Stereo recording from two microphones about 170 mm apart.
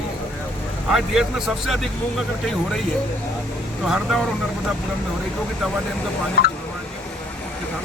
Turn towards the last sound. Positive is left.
turn(degrees=65)  # may be behind; listen again after turning